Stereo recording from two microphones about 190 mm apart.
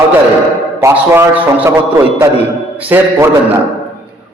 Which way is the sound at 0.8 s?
15° right (ahead or behind).